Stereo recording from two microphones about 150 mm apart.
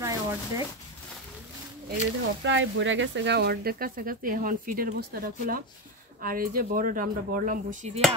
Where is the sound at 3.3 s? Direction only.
90° right; by 7.9 s 60° right (ahead or behind).